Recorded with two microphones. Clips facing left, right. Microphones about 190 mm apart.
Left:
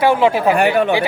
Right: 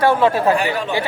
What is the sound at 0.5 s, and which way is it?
Speech, 60° left (ahead or behind).